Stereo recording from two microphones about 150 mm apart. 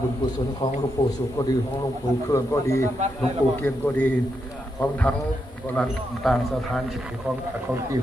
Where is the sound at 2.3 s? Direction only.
20° left (ahead or behind).